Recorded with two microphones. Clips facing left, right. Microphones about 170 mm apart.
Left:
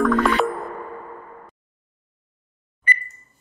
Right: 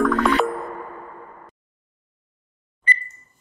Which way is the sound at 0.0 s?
Centre (ahead or behind).